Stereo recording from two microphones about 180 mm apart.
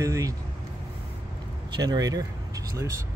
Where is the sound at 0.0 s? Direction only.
15° right (ahead or behind).